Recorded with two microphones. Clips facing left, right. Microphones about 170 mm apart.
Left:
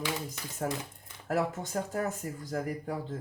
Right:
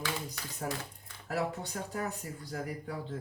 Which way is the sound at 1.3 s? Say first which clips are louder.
Left 4 dB; 45° left (ahead or behind).